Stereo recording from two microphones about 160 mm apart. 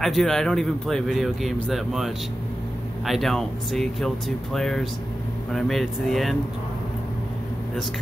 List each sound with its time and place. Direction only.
0.0 s a man's voice: centre (ahead or behind)